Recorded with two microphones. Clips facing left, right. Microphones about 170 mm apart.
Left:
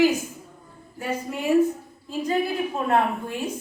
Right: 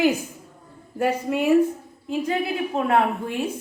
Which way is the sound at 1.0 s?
65° right (ahead or behind).